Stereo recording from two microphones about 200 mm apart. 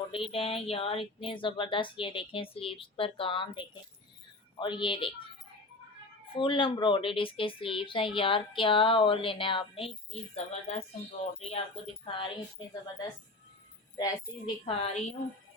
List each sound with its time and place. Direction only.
0.1 s a woman's voice: 25° left (ahead or behind)
6.3 s a woman's voice: 25° left (ahead or behind)
13.9 s a woman's voice: 20° left (ahead or behind)